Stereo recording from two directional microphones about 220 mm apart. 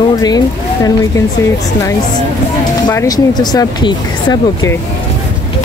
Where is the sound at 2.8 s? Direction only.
15° left (ahead or behind).